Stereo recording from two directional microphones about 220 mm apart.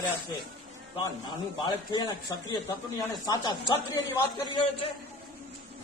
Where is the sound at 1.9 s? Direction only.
20° left (ahead or behind).